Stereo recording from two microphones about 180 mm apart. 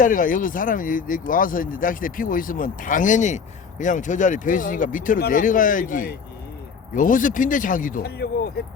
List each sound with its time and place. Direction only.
0.0 s speech: 50° left (ahead or behind)